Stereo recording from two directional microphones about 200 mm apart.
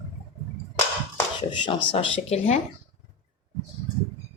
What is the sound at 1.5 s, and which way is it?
A woman's voice, 25° left (ahead or behind).